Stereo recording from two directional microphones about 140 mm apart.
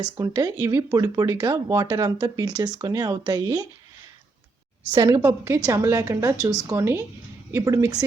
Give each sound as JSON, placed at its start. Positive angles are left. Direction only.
{"t": 0.2, "sound": "speech", "side_deg": -20}
{"t": 4.9, "sound": "speech", "side_deg": -25}